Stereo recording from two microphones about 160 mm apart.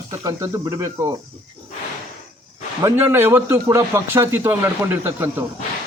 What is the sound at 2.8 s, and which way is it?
A man's voice, 15° right (ahead or behind).